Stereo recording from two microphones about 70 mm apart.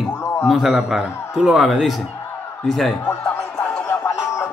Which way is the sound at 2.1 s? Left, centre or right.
Left.